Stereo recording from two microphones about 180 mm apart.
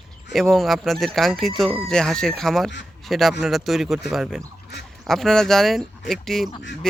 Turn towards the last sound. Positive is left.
turn(degrees=0)  # may be behind; listen again after turning